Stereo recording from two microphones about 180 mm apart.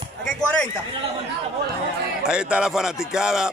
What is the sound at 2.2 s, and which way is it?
A man's voice, 5° right (ahead or behind).